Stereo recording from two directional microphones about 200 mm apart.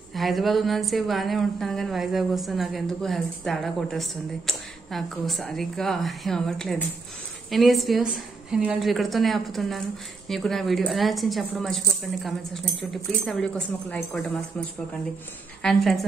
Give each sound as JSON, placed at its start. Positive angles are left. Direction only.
{"t": 0.1, "sound": "a woman's voice", "side_deg": 0}
{"t": 15.6, "sound": "a woman's voice", "side_deg": 0}